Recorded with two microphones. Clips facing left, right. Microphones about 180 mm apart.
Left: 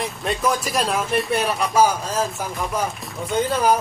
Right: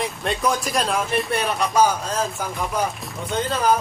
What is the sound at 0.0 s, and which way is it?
Speech, centre (ahead or behind).